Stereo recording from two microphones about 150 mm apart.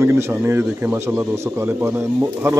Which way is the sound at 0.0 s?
15° right (ahead or behind).